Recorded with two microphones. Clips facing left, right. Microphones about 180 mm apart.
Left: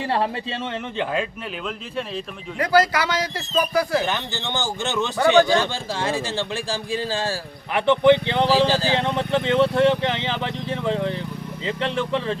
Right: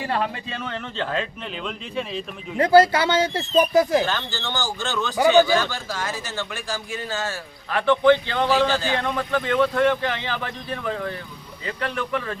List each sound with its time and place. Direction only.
0.0 s speech: 30° left (ahead or behind)
0.9 s speech: 10° left (ahead or behind)
2.6 s speech: 25° right (ahead or behind)
4.3 s speech: 20° left (ahead or behind)
8.5 s speech: 30° left (ahead or behind)